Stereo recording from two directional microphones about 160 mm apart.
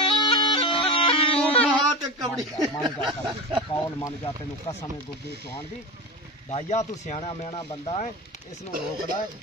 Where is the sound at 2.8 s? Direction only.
25° right (ahead or behind).